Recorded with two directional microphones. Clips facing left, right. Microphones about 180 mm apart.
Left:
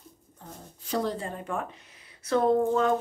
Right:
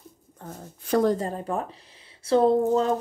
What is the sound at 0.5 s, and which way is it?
Speech, 50° right (ahead or behind).